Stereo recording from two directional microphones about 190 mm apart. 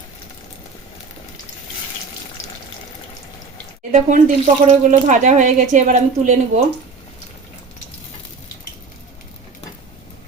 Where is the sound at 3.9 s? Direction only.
40° right (ahead or behind).